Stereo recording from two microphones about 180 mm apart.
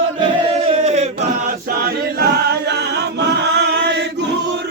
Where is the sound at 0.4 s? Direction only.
35° right (ahead or behind).